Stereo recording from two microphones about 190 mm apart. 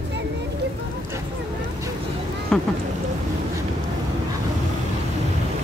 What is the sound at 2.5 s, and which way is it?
Speech, 5° left (ahead or behind).